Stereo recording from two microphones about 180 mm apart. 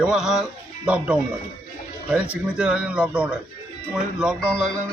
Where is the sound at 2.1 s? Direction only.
5° right (ahead or behind).